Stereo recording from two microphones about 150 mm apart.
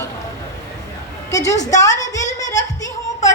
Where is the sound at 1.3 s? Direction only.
25° left (ahead or behind).